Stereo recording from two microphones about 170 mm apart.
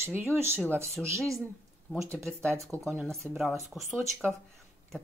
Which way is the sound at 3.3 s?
Centre (ahead or behind).